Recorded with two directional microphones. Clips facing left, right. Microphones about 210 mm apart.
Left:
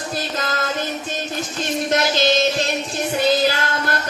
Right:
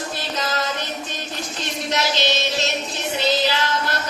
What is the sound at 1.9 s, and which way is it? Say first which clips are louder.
Music: left 4 dB; 50° left (ahead or behind).